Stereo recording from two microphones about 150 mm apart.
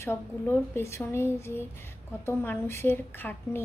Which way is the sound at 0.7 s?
15° left (ahead or behind).